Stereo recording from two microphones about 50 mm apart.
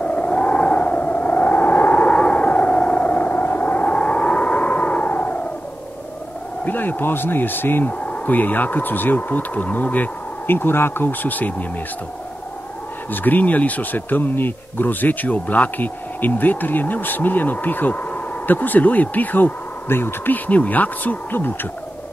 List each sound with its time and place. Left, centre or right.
0.0 s a sound: left
6.6 s speech: left
8.0 s speech: left
10.4 s speech: left
13.1 s speech: left
20.4 s speech: left